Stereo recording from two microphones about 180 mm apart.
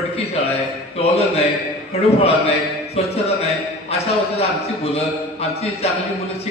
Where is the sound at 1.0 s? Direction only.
35° left (ahead or behind).